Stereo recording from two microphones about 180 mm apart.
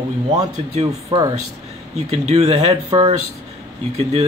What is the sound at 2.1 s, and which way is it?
Speech, 40° right (ahead or behind).